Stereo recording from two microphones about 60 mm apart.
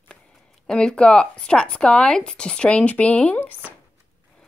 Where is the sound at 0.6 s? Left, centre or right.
Centre.